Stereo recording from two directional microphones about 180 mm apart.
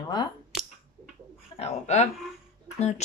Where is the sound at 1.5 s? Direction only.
35° left (ahead or behind).